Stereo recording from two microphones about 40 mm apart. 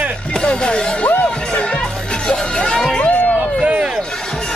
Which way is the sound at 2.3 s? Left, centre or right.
Centre.